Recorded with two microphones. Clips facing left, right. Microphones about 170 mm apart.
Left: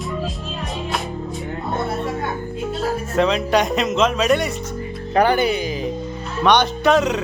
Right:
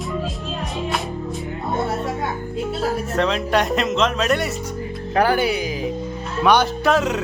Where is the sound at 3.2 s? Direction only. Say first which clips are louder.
Left 3 dB; centre (ahead or behind).